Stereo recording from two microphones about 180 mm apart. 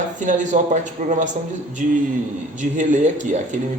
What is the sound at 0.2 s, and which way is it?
Speech, 45° right (ahead or behind).